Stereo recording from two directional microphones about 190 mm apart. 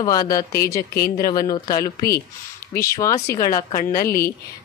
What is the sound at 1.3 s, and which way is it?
Speech, 20° left (ahead or behind).